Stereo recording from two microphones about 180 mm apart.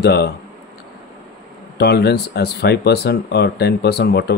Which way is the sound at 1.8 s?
65° left (ahead or behind).